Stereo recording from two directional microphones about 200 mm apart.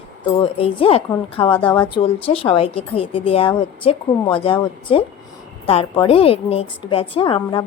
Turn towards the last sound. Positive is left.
turn(degrees=25)  # may be behind; listen again after turning